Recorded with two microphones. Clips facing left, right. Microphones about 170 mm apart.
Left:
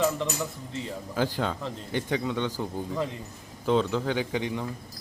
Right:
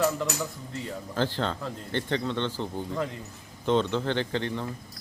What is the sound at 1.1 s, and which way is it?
Speech, 10° left (ahead or behind).